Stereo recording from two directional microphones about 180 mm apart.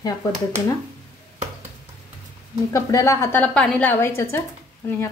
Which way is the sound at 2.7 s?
15° left (ahead or behind).